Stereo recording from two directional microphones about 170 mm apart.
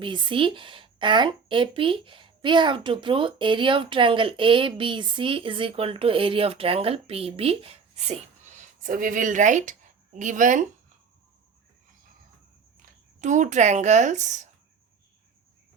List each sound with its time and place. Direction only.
0.0 s a woman's voice: 30° right (ahead or behind); by 10.6 s 50° right (ahead or behind)
13.2 s a woman's voice: 45° right (ahead or behind)